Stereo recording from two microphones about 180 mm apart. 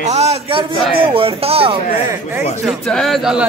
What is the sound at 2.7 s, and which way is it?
Speech, centre (ahead or behind).